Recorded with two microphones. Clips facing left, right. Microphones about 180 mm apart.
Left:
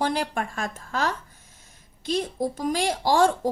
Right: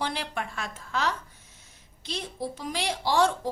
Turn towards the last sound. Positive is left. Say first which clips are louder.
# left 4 dB
turn(degrees=45)  # may be behind; listen again after turning